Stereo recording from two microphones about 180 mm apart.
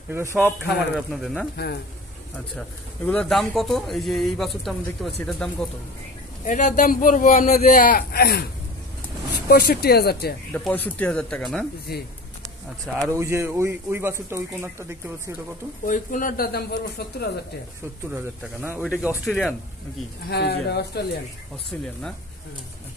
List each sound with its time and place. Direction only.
0.1 s speech: 15° right (ahead or behind)
0.9 s a man's voice: centre (ahead or behind)
3.1 s a man's voice: 5° left (ahead or behind)
6.4 s speech: 45° left (ahead or behind)
8.1 s speech: 60° left (ahead or behind)
9.5 s speech: 60° left (ahead or behind)
10.5 s a man's voice: 10° left (ahead or behind)
11.9 s speech: 60° left (ahead or behind)
13.1 s speech: 15° right (ahead or behind)
15.8 s speech: 50° left (ahead or behind)
18.1 s a man's voice: 10° right (ahead or behind)
20.2 s speech: 65° left (ahead or behind)